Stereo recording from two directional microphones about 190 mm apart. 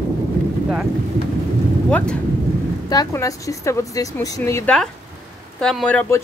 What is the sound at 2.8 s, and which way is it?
Speech, 20° left (ahead or behind).